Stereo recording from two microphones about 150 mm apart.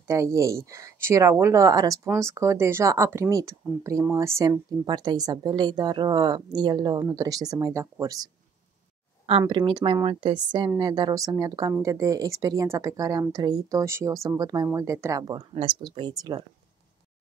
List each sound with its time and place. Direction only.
0.0 s speech: 20° right (ahead or behind)
9.5 s speech: 30° right (ahead or behind)